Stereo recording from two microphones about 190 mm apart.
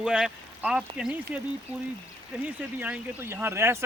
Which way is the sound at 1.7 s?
30° right (ahead or behind).